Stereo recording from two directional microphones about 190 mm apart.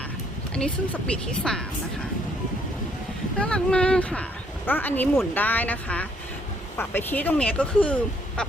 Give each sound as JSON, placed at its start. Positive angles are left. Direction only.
{"t": 0.5, "sound": "speech", "side_deg": 5}
{"t": 3.3, "sound": "speech", "side_deg": 5}